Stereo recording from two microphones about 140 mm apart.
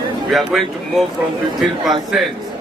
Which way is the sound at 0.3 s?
Centre (ahead or behind).